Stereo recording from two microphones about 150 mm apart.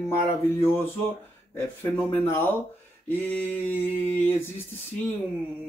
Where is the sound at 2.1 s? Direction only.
15° left (ahead or behind).